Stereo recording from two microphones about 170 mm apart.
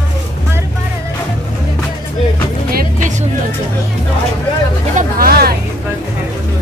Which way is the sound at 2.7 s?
55° right (ahead or behind).